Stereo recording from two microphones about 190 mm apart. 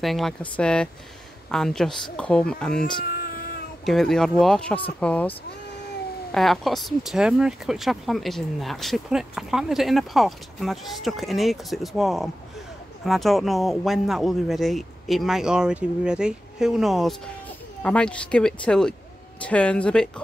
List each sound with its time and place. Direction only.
0.0 s speech: centre (ahead or behind)
2.8 s a sound: 50° left (ahead or behind)
3.8 s speech: centre (ahead or behind)
6.3 s speech: centre (ahead or behind)